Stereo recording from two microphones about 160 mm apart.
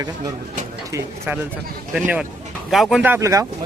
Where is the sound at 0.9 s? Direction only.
15° right (ahead or behind).